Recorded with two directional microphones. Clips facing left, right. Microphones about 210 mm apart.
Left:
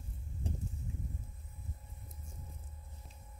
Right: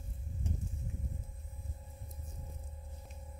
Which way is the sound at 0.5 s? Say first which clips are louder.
Even; 35° left (ahead or behind).